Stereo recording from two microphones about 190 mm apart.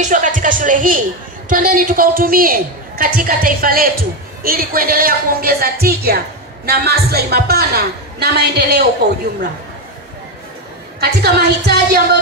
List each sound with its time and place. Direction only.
0.0 s a woman's voice: 40° right (ahead or behind); by 8.8 s 60° right (ahead or behind)
11.0 s a woman's voice: 55° right (ahead or behind)